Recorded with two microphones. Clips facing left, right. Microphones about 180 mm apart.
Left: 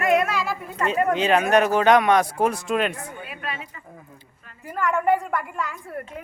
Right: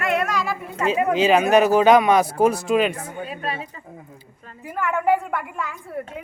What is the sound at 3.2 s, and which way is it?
Speech, 35° right (ahead or behind).